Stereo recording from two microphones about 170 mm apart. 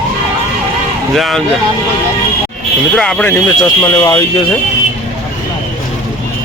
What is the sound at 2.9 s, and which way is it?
Speech, 5° left (ahead or behind).